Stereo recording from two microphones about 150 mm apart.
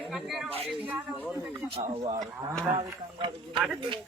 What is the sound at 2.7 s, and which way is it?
Speech, 30° right (ahead or behind).